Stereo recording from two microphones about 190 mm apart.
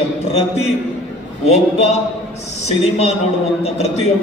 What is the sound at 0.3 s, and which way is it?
A man's voice, 35° left (ahead or behind).